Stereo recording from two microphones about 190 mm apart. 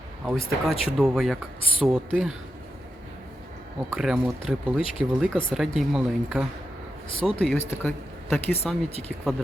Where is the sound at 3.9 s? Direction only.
Centre (ahead or behind).